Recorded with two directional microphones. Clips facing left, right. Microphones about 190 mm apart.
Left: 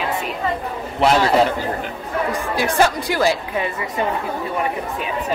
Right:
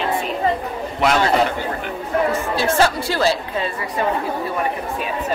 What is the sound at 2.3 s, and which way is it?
Speech, 15° left (ahead or behind).